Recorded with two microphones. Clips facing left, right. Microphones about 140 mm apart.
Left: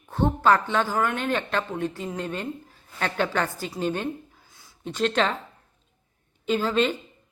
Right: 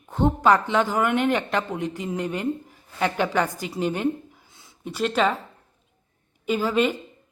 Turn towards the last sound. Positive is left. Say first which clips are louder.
# right 1 dB
turn(degrees=-10)  # may be behind; listen again after turning